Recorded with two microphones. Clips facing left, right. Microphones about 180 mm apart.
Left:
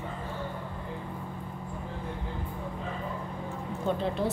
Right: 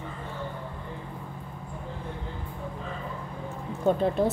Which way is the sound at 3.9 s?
45° right (ahead or behind).